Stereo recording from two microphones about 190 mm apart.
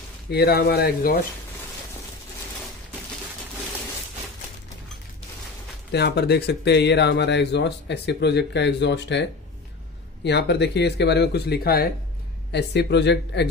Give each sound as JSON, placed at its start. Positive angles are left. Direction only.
{"t": 0.3, "sound": "speech", "side_deg": 55}
{"t": 5.9, "sound": "speech", "side_deg": 60}